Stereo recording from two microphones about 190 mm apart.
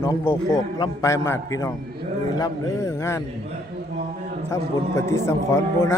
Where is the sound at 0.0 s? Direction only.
15° left (ahead or behind).